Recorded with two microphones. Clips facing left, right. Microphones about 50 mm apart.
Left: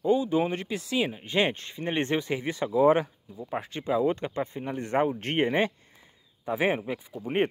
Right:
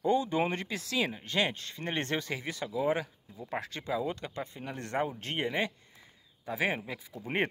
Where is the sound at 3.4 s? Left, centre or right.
Centre.